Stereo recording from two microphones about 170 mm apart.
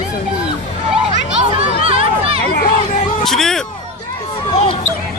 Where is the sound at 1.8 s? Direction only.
35° right (ahead or behind).